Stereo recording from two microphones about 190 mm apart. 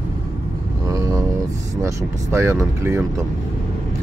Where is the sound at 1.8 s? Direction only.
15° right (ahead or behind).